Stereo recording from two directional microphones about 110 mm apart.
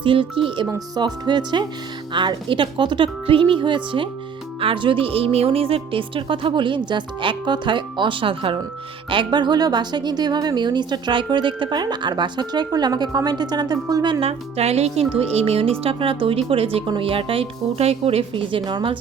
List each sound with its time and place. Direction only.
0.0 s speech: 50° right (ahead or behind)
0.9 s speech: 40° right (ahead or behind)
14.2 s speech: 70° right (ahead or behind); by 18.9 s 45° right (ahead or behind)